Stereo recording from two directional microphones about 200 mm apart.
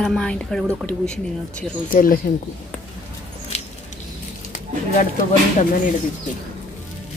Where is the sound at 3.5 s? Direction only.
30° left (ahead or behind).